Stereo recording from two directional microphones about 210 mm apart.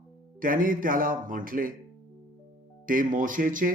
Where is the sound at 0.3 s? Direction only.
40° right (ahead or behind).